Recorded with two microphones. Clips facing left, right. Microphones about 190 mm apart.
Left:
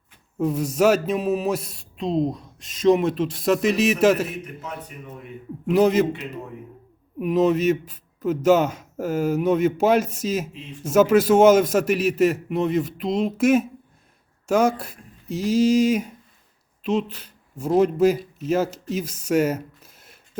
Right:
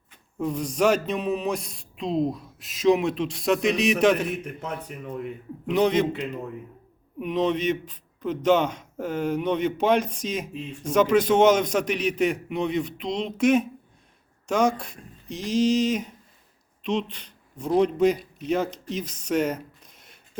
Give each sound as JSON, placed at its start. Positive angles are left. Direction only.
{"t": 0.3, "sound": "speech", "side_deg": 5}
{"t": 5.6, "sound": "a man's voice", "side_deg": 5}